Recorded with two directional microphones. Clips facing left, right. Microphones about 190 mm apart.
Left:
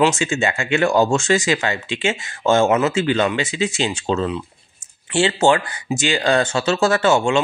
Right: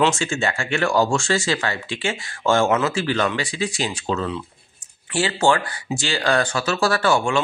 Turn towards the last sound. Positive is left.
turn(degrees=25)  # may be behind; listen again after turning